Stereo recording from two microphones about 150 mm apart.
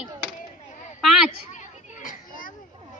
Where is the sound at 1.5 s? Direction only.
55° left (ahead or behind).